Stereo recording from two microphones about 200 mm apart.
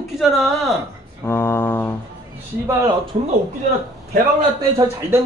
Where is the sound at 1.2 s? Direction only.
10° left (ahead or behind).